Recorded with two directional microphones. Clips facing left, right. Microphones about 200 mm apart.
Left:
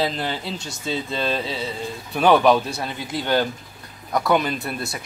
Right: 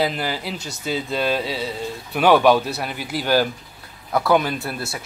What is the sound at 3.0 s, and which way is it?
Speech, 25° left (ahead or behind).